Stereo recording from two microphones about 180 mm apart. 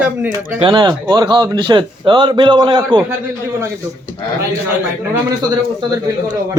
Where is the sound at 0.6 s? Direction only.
25° right (ahead or behind).